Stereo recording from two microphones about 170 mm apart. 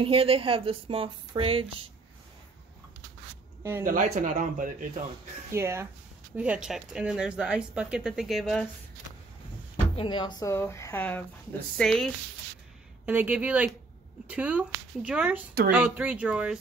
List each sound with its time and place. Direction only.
0.0 s speech: 35° right (ahead or behind)
3.8 s speech: 50° right (ahead or behind)
5.5 s speech: 15° right (ahead or behind); by 8.6 s centre (ahead or behind)
9.9 s speech: 30° left (ahead or behind); by 12.1 s 5° left (ahead or behind)
13.0 s speech: 10° right (ahead or behind)